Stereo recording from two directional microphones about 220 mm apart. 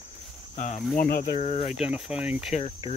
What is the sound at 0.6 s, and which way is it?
Cricket, 35° left (ahead or behind).